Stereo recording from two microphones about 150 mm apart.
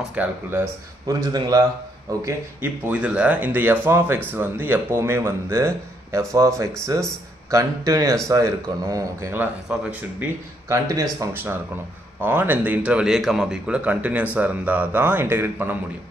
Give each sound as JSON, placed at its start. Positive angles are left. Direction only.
{"t": 0.1, "sound": "speech", "side_deg": -15}
{"t": 1.2, "sound": "speech", "side_deg": -25}
{"t": 2.2, "sound": "speech", "side_deg": -10}
{"t": 10.7, "sound": "speech", "side_deg": -20}